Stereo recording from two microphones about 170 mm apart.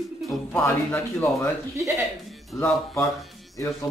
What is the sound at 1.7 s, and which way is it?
Speech, 20° right (ahead or behind).